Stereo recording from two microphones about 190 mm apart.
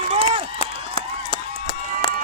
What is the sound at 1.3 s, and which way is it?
Run, 30° left (ahead or behind).